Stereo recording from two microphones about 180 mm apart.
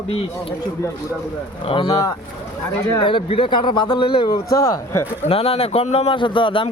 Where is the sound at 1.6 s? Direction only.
30° left (ahead or behind).